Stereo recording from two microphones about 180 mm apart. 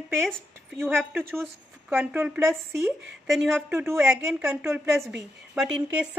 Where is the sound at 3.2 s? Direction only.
Centre (ahead or behind).